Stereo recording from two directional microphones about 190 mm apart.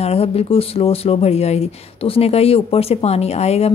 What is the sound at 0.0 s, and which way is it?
Speech, 30° left (ahead or behind).